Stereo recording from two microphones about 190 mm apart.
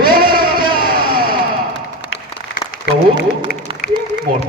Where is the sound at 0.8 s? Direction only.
50° right (ahead or behind).